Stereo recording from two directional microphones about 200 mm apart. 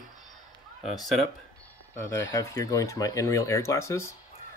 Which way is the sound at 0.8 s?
Centre (ahead or behind).